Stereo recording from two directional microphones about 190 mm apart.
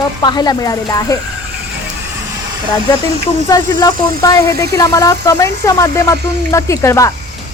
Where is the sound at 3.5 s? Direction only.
20° left (ahead or behind).